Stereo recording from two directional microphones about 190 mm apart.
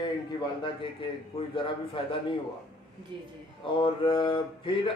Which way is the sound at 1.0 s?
25° left (ahead or behind).